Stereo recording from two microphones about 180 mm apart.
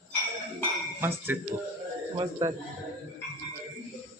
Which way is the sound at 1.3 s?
10° right (ahead or behind).